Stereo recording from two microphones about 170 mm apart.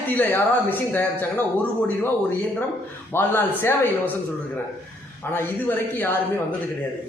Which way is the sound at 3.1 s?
10° left (ahead or behind).